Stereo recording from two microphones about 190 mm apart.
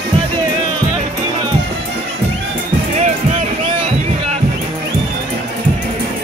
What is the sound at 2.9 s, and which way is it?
Music, 35° right (ahead or behind).